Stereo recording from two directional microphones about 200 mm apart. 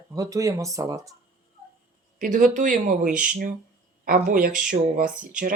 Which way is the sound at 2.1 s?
40° right (ahead or behind).